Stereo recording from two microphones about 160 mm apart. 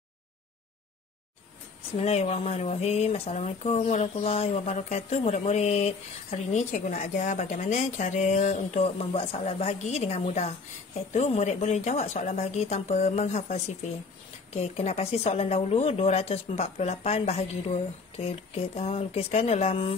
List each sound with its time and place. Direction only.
2.0 s speech: 40° left (ahead or behind)